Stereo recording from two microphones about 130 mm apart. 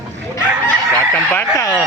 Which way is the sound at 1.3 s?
15° left (ahead or behind).